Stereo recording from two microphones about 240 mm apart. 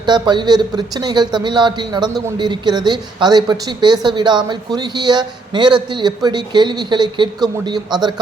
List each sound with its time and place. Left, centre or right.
0.0 s a man's voice: centre